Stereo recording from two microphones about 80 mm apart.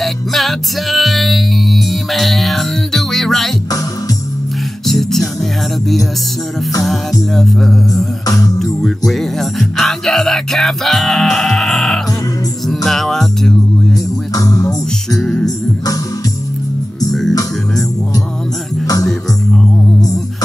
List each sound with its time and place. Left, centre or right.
0.0 s music: centre
4.8 s music: centre
14.3 s music: left
15.1 s music: centre